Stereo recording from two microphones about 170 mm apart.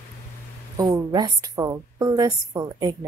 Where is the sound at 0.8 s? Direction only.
25° right (ahead or behind).